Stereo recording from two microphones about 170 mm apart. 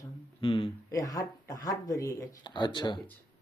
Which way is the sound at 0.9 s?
20° left (ahead or behind).